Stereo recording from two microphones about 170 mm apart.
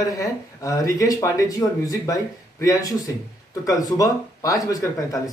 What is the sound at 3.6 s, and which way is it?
Speech, 20° left (ahead or behind).